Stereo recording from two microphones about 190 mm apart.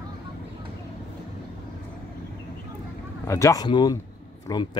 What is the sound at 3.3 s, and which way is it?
Speech, 15° left (ahead or behind).